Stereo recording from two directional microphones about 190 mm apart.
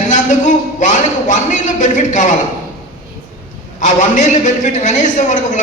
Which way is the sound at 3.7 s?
40° left (ahead or behind).